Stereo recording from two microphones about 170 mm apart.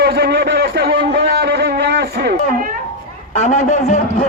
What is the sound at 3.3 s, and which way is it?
Speech, 45° left (ahead or behind).